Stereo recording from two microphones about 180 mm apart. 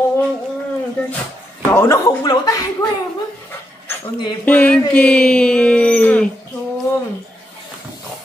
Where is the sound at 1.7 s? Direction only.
15° left (ahead or behind).